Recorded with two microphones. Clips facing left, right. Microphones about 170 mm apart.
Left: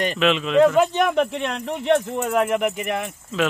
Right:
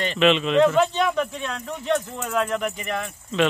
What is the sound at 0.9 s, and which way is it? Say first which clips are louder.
Speech: left 3 dB; 55° left (ahead or behind).